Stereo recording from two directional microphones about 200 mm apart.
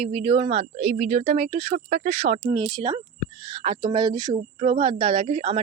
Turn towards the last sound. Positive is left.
turn(degrees=-30)  # may be behind; listen again after turning